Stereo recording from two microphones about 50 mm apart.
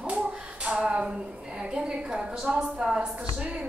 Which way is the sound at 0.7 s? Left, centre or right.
Right.